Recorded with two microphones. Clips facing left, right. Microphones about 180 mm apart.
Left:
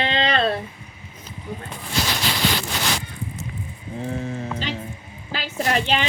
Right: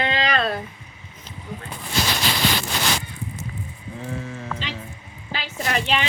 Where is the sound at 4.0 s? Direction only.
35° left (ahead or behind).